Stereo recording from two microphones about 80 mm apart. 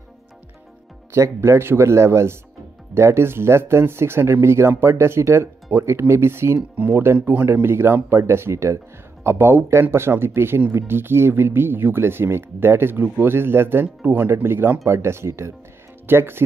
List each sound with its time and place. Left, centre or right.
1.1 s speech: right